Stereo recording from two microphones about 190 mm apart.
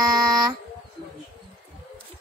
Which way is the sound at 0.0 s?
20° right (ahead or behind).